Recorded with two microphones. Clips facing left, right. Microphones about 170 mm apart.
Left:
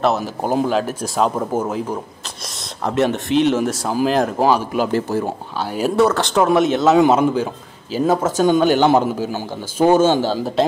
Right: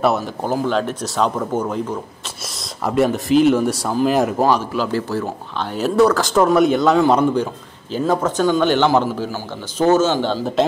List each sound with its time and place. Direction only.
0.4 s speech: 15° left (ahead or behind); by 4.4 s 5° right (ahead or behind)
4.4 s speech: 10° left (ahead or behind)
5.9 s speech: centre (ahead or behind)
8.7 s a man's voice: 30° left (ahead or behind)
9.2 s speech: 15° left (ahead or behind)